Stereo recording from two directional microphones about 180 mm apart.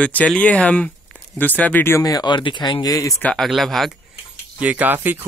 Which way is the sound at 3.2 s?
Centre (ahead or behind).